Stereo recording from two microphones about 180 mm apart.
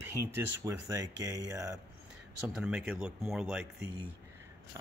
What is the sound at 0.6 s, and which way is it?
Speech, 15° right (ahead or behind).